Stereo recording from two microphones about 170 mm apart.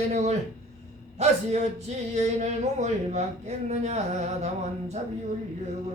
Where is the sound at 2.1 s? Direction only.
40° right (ahead or behind).